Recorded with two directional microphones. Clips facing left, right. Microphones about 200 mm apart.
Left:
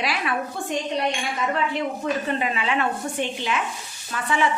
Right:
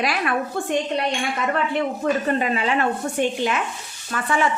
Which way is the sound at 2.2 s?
45° right (ahead or behind).